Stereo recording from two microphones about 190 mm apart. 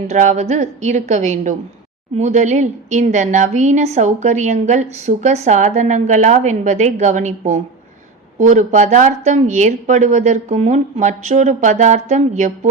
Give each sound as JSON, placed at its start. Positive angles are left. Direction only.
{"t": 0.1, "sound": "a woman's voice", "side_deg": -40}